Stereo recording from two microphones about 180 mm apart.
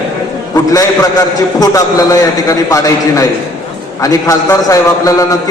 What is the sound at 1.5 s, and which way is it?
A man's voice, 20° left (ahead or behind).